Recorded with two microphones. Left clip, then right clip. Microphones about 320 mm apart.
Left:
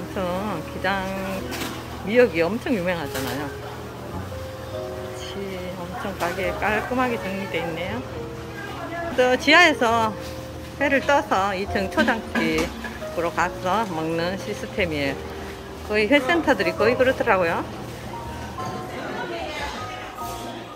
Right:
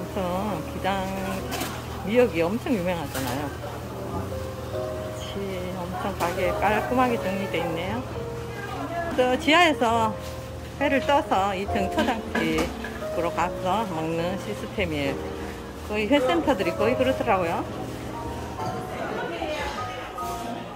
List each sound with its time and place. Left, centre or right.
0.8 s speech: centre
2.0 s speech: centre
6.4 s speech: centre
9.2 s speech: centre
13.2 s speech: centre